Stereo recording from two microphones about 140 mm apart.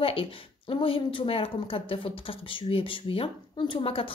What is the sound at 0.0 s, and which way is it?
Speech, 40° left (ahead or behind).